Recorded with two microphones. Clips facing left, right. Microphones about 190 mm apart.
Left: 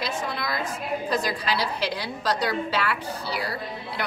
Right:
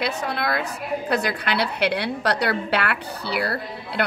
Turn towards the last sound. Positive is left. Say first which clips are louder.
# right 5 dB
turn(degrees=-65)  # may be behind; listen again after turning